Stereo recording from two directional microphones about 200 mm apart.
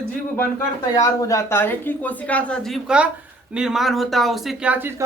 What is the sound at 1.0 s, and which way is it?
Speech, 15° left (ahead or behind).